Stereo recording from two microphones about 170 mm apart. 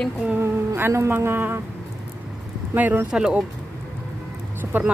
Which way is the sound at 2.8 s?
10° right (ahead or behind).